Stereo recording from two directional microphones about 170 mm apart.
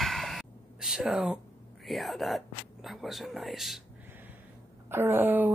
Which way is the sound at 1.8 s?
Centre (ahead or behind).